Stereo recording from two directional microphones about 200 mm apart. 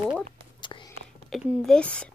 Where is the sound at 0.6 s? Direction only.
25° left (ahead or behind).